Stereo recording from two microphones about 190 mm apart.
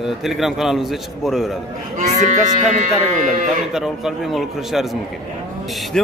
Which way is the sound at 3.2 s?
45° right (ahead or behind).